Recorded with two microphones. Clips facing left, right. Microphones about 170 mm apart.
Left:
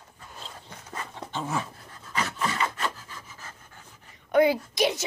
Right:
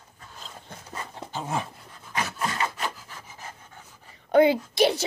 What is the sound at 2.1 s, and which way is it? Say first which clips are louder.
Dog: even; 10° right (ahead or behind).